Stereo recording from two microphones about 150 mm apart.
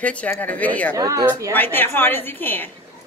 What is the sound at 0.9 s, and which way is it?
Speech, 25° right (ahead or behind).